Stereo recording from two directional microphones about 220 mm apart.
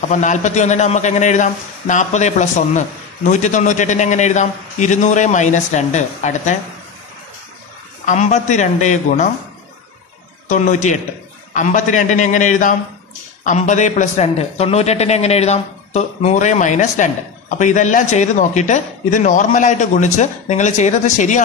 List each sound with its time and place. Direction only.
0.1 s speech: 35° left (ahead or behind)
8.0 s speech: 35° left (ahead or behind)
10.5 s speech: 35° left (ahead or behind)